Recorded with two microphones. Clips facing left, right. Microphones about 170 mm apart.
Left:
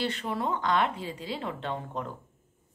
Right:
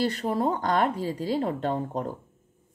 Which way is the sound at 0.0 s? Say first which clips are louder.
Right 5 dB; 40° right (ahead or behind).